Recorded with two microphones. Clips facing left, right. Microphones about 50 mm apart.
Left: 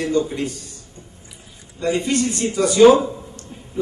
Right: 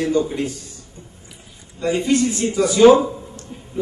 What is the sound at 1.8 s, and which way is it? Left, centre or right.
Speech, right.